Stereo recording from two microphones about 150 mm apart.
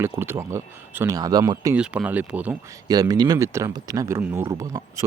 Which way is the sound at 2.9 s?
25° right (ahead or behind).